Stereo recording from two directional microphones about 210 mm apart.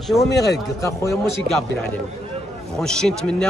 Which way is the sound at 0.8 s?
15° left (ahead or behind).